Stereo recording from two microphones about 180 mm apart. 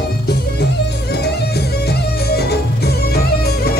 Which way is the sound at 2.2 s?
65° left (ahead or behind).